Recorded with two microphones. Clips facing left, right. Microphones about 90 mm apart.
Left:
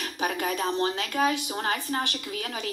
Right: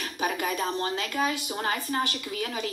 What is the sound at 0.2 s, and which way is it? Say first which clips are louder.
Speech: even; 45° left (ahead or behind).